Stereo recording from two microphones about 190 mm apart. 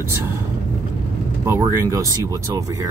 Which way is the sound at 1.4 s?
15° right (ahead or behind).